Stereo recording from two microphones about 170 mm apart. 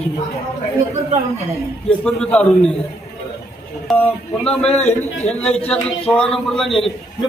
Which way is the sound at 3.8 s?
5° left (ahead or behind).